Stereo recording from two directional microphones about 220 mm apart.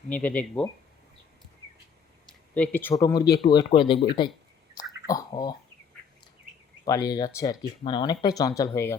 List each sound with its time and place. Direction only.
0.1 s speech: 5° left (ahead or behind)
2.6 s speech: 10° left (ahead or behind)
6.8 s speech: 15° left (ahead or behind)